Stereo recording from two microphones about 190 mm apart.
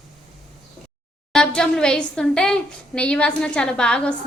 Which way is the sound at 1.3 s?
5° left (ahead or behind).